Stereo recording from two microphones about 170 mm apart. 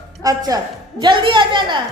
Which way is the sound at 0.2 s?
20° right (ahead or behind).